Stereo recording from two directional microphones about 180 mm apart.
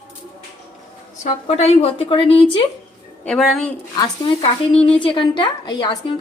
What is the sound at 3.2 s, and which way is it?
Speech, centre (ahead or behind).